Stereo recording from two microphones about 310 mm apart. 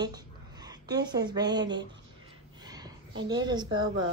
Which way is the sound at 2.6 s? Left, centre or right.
Centre.